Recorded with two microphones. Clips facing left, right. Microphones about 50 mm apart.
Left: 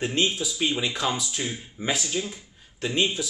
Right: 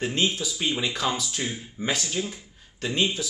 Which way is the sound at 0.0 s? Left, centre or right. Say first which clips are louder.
Left 1 dB; centre.